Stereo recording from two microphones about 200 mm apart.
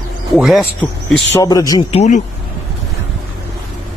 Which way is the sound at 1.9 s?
35° left (ahead or behind).